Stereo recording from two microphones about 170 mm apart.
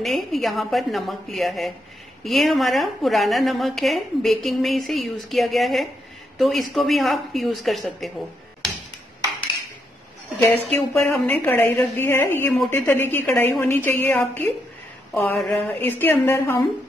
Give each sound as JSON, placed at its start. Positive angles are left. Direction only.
{"t": 0.0, "sound": "a woman's voice", "side_deg": 0}
{"t": 10.4, "sound": "a woman's voice", "side_deg": 10}